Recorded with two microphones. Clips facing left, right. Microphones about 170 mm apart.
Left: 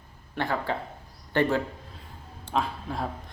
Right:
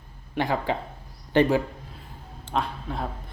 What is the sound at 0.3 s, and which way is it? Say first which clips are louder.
Speech: right 3 dB; 15° right (ahead or behind).